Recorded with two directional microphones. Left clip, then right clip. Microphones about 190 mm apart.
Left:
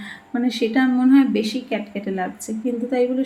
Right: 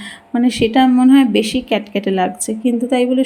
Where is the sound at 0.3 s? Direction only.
40° right (ahead or behind).